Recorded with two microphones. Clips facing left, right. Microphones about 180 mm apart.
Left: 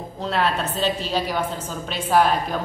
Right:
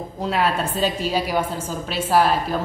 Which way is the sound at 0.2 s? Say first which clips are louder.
Right 1 dB; 10° right (ahead or behind).